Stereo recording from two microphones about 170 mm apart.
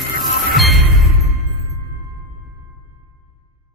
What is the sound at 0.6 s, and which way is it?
Music, centre (ahead or behind).